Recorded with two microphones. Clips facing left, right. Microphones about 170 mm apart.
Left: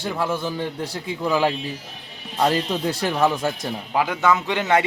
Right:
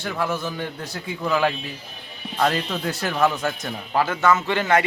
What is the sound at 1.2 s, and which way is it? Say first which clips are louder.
Speech: left 1 dB; 15° left (ahead or behind).